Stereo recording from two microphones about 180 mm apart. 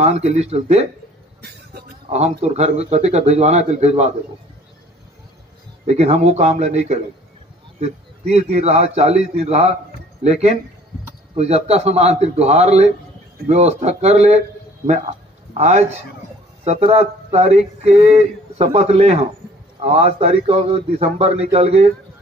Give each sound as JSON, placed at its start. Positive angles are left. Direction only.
{"t": 0.0, "sound": "a man's voice", "side_deg": -35}
{"t": 1.4, "sound": "a sound", "side_deg": -60}
{"t": 2.0, "sound": "a man's voice", "side_deg": -35}
{"t": 5.9, "sound": "a man's voice", "side_deg": -35}
{"t": 15.5, "sound": "a man's voice", "side_deg": -40}